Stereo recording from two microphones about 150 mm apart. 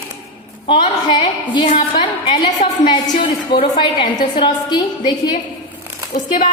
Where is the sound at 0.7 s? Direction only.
35° left (ahead or behind).